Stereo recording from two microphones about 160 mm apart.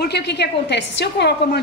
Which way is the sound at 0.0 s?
90° left.